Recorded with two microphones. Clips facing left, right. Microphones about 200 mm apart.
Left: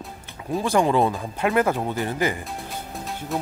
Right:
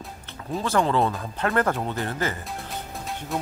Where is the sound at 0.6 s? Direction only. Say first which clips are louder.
Left 3 dB; 15° left (ahead or behind).